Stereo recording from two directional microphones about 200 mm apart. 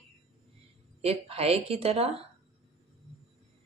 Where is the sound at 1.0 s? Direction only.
30° right (ahead or behind).